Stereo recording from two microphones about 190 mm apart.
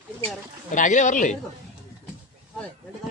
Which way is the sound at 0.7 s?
40° left (ahead or behind).